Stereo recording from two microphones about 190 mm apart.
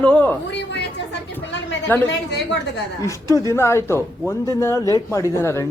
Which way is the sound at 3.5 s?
15° left (ahead or behind).